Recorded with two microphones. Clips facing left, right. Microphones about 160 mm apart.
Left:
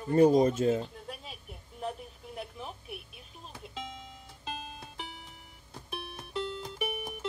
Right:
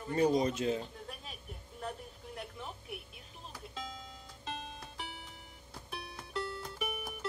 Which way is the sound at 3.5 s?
20° left (ahead or behind).